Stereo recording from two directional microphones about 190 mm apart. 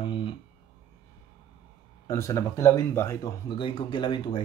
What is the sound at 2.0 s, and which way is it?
Speech, 15° left (ahead or behind).